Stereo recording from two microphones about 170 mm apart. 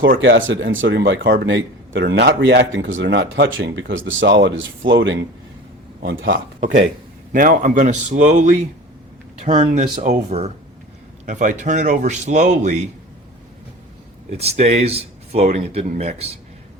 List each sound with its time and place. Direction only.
0.2 s speech: 90° right
7.3 s a man's voice: 50° right (ahead or behind)
14.3 s speech: 40° right (ahead or behind)